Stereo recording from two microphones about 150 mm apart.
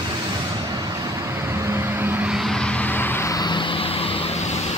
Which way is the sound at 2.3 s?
5° left (ahead or behind).